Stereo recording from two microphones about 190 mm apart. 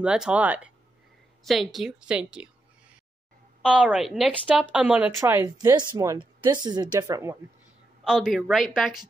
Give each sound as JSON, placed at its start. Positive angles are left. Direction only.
{"t": 0.0, "sound": "speech", "side_deg": -5}
{"t": 3.6, "sound": "speech", "side_deg": -5}
{"t": 8.0, "sound": "speech", "side_deg": -5}